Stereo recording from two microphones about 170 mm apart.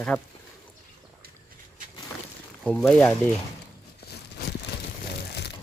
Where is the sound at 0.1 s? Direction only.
5° left (ahead or behind).